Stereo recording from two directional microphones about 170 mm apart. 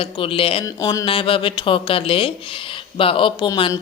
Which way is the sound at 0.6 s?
20° left (ahead or behind).